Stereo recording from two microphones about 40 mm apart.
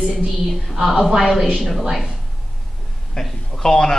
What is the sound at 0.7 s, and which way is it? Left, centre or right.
A man's voice, centre.